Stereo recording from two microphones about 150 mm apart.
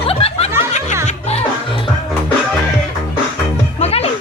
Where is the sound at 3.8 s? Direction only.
45° left (ahead or behind).